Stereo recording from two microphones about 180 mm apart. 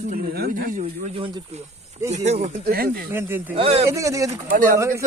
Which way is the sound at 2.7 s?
55° right (ahead or behind).